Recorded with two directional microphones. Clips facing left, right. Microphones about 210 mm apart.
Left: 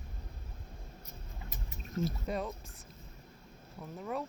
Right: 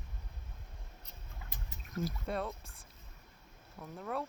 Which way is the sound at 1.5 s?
25° left (ahead or behind).